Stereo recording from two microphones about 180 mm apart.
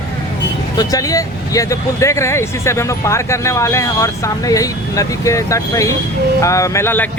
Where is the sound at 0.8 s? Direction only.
20° left (ahead or behind).